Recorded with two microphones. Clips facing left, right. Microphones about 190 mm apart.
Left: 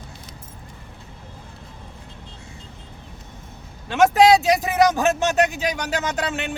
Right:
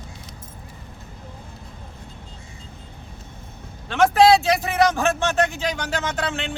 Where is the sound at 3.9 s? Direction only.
15° left (ahead or behind).